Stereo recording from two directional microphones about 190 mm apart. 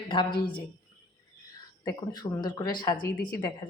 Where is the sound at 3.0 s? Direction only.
50° left (ahead or behind).